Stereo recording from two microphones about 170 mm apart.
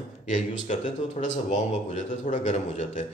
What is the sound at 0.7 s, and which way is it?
A man's voice, 45° left (ahead or behind).